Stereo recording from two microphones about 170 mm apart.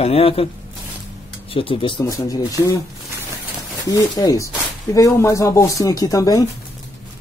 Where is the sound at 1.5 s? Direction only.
30° left (ahead or behind).